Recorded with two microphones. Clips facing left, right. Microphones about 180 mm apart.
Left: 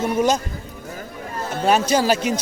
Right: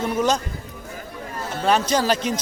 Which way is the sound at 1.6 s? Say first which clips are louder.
Left 2 dB; 10° left (ahead or behind).